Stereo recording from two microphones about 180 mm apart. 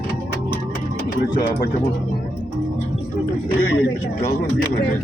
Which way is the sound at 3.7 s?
70° left (ahead or behind).